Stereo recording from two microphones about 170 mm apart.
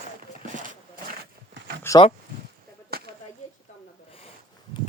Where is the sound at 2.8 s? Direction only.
65° right (ahead or behind).